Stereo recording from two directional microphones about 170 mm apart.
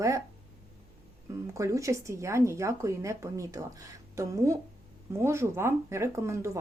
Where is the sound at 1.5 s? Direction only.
15° right (ahead or behind).